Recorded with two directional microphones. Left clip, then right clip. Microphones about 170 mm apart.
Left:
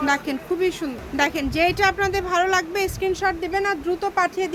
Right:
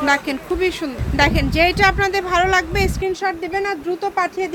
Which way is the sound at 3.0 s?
5° left (ahead or behind).